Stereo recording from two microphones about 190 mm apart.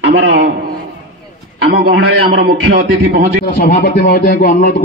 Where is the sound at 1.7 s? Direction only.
60° right (ahead or behind).